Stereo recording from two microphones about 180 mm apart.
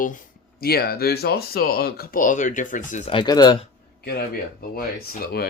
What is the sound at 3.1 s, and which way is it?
Speech, 25° left (ahead or behind).